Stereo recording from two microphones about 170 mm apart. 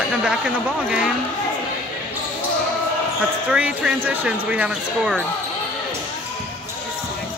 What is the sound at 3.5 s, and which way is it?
Speech, 5° right (ahead or behind).